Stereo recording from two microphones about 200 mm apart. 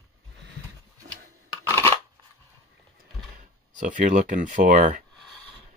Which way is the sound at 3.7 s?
40° right (ahead or behind).